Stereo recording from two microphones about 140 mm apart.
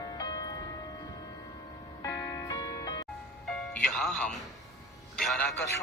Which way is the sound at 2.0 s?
20° left (ahead or behind).